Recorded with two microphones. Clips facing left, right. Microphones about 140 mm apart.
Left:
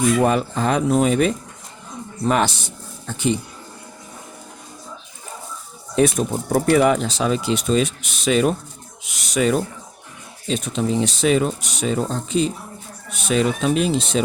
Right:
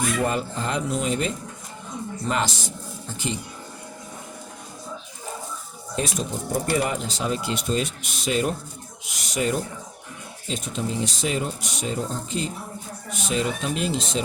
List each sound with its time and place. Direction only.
0.2 s speech: 70° left (ahead or behind)
6.0 s speech: 65° left (ahead or behind); by 9.6 s 90° left
10.5 s speech: 70° left (ahead or behind)
13.1 s speech: 70° left (ahead or behind)